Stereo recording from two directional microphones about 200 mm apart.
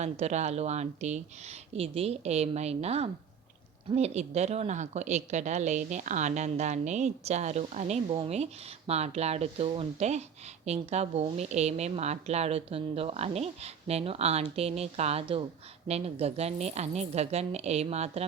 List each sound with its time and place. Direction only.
0.0 s a woman's voice: 35° right (ahead or behind)